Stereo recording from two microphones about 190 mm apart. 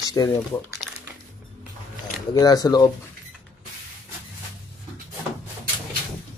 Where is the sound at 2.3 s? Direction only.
20° left (ahead or behind).